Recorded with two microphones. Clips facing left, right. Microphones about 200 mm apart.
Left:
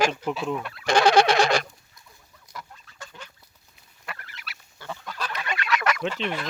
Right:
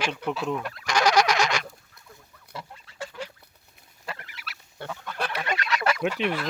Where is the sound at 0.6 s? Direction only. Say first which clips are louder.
Right 1 dB; 40° right (ahead or behind).